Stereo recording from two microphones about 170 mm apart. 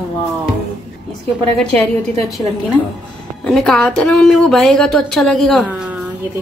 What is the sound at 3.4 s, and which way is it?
Speech, 5° left (ahead or behind).